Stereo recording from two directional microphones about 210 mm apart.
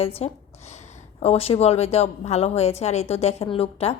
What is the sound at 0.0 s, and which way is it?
A woman's voice, 30° left (ahead or behind).